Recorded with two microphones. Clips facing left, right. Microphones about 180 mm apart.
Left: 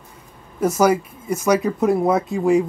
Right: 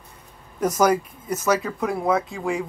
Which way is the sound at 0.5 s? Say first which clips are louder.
Left 3 dB; 10° left (ahead or behind).